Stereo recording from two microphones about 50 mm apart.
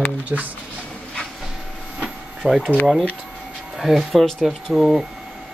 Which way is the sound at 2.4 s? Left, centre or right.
Right.